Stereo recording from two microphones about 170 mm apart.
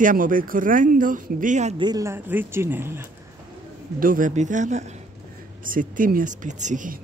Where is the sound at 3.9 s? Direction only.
55° right (ahead or behind).